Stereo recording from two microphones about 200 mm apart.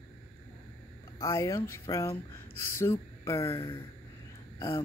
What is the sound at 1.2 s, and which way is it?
Speech, 15° left (ahead or behind).